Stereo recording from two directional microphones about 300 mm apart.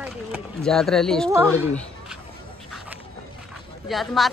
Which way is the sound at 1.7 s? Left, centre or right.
Centre.